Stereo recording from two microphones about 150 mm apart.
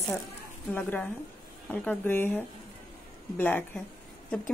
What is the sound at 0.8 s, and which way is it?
A woman's voice, 10° left (ahead or behind).